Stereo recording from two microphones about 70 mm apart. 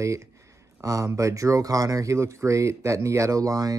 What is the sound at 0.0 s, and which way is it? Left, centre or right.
Speech, right.